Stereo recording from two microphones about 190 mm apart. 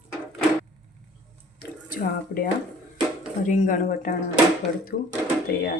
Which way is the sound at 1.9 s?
45° left (ahead or behind).